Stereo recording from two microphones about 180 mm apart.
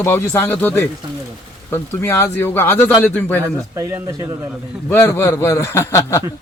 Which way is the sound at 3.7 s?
20° right (ahead or behind).